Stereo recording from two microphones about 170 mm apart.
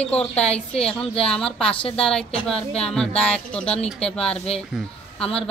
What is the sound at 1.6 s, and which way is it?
Speech, 35° left (ahead or behind).